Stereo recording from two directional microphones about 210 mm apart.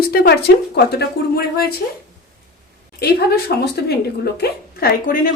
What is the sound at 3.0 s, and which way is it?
Speech, 50° left (ahead or behind).